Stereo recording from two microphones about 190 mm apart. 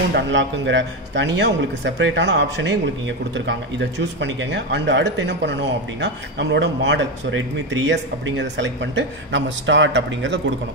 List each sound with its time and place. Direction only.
0.1 s speech: 75° right (ahead or behind)